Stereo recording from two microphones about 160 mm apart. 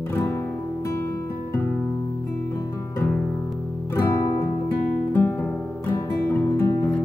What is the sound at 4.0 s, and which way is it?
Music, 20° left (ahead or behind).